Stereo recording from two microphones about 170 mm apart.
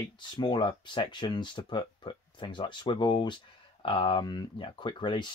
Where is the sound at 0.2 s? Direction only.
25° left (ahead or behind).